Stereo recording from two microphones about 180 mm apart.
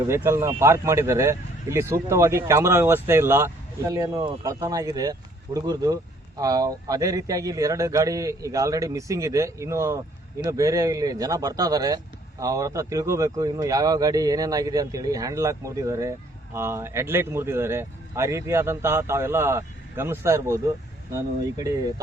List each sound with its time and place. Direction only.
0.1 s speech: 15° right (ahead or behind)